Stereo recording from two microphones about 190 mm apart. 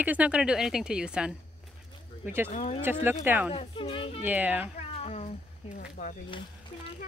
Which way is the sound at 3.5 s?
30° left (ahead or behind).